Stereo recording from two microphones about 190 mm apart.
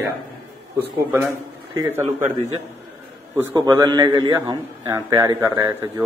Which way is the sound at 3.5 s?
20° right (ahead or behind).